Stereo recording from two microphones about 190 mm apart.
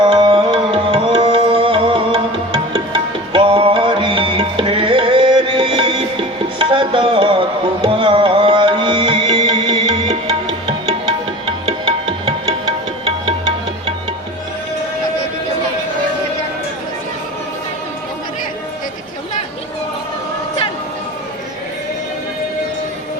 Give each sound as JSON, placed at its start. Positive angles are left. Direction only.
{"t": 0.0, "sound": "music", "side_deg": -25}